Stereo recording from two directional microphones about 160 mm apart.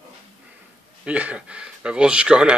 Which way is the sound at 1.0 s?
10° right (ahead or behind).